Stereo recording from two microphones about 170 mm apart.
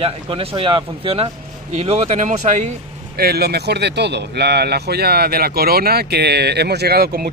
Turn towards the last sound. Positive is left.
turn(degrees=-65)  # may be behind; listen again after turning